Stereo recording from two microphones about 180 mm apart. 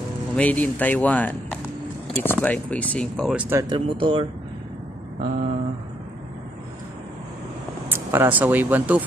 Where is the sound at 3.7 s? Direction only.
30° right (ahead or behind).